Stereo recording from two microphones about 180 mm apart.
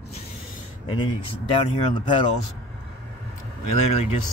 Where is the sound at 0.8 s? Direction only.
30° left (ahead or behind).